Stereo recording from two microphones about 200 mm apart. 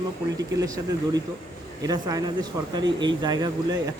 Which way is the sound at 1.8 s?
20° right (ahead or behind).